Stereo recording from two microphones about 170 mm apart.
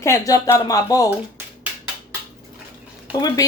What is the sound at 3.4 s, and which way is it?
Speech, 20° left (ahead or behind).